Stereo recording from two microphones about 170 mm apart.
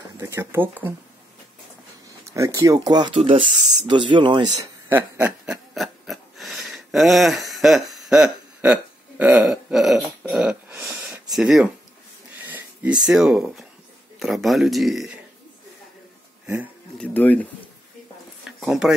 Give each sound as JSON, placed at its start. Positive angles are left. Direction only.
{"t": 0.2, "sound": "speech", "side_deg": -15}
{"t": 2.3, "sound": "speech", "side_deg": -20}
{"t": 9.2, "sound": "a sound", "side_deg": -10}
{"t": 11.3, "sound": "speech", "side_deg": -5}
{"t": 17.0, "sound": "speech", "side_deg": 10}
{"t": 18.4, "sound": "a sound", "side_deg": -5}